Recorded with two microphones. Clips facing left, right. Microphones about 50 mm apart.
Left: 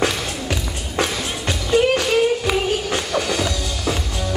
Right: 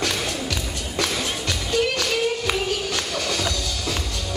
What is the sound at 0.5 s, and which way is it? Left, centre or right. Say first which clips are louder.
Music: left 3 dB; left.